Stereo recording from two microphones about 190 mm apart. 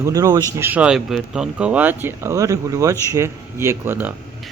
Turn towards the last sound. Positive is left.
turn(degrees=-10)  # may be behind; listen again after turning